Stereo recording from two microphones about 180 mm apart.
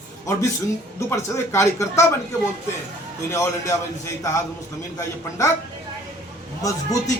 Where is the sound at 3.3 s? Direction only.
15° left (ahead or behind).